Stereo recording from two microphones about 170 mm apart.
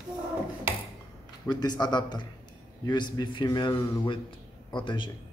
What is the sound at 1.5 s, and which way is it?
A man's voice, 25° left (ahead or behind).